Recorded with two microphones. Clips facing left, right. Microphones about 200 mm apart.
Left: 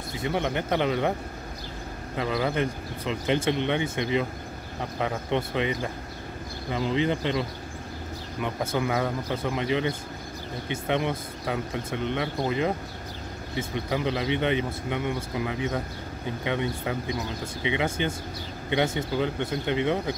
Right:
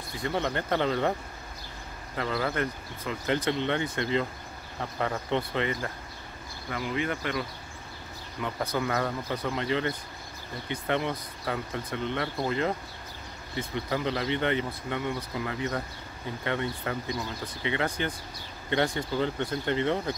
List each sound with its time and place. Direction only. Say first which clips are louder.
0.2 s speech: left 2 dB; 15° left (ahead or behind)
2.1 s speech: left 3 dB; 15° left (ahead or behind)